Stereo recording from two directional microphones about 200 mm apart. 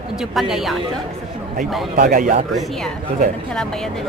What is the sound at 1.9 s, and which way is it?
Speech, 45° right (ahead or behind).